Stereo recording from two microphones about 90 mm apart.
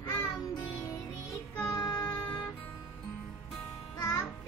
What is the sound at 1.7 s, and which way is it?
Music, 35° left (ahead or behind).